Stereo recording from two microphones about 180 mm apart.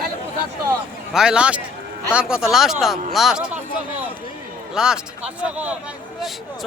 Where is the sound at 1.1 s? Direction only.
5° right (ahead or behind).